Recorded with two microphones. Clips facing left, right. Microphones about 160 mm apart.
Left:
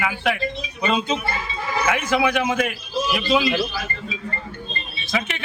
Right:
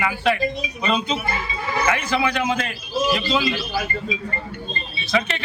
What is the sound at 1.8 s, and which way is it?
Speech, 15° left (ahead or behind).